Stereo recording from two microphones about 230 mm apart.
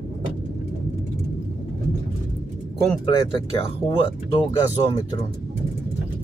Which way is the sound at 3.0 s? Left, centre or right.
Left.